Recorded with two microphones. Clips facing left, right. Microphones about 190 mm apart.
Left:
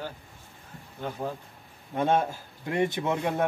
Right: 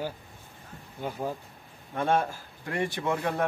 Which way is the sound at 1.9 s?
20° left (ahead or behind).